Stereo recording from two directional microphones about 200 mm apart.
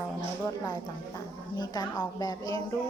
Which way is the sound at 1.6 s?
20° left (ahead or behind).